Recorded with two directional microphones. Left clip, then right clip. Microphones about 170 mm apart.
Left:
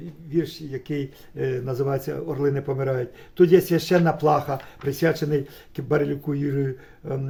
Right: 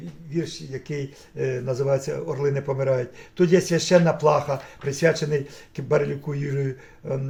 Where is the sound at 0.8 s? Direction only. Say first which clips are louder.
Left 2 dB; 40° left (ahead or behind).